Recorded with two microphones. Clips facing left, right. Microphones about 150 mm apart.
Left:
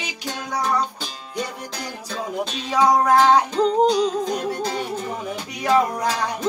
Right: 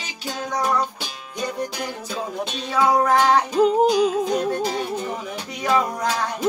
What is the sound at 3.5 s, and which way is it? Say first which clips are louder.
Music: right 1 dB; 10° right (ahead or behind).